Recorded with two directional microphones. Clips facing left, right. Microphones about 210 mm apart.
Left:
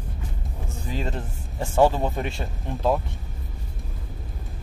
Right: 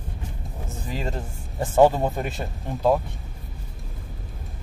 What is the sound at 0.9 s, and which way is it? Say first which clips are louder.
Speech: even; centre (ahead or behind).